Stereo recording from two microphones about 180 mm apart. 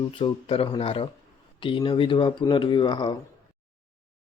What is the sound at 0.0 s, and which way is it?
Speech, 30° left (ahead or behind).